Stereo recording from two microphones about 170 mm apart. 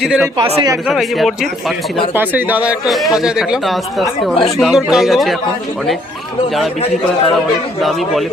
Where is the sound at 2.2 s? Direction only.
10° right (ahead or behind).